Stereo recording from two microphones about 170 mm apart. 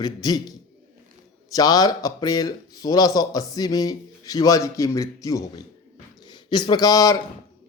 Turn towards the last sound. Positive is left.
turn(degrees=20)  # may be behind; listen again after turning